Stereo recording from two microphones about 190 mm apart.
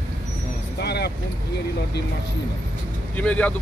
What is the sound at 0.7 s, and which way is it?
Speech, 60° left (ahead or behind).